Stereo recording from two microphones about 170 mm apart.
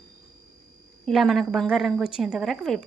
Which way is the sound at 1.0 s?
Centre (ahead or behind).